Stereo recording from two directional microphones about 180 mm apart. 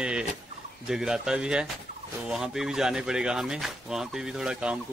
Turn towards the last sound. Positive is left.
turn(degrees=-5)  # may be behind; listen again after turning